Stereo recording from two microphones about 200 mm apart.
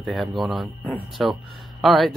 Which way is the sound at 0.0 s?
Centre (ahead or behind).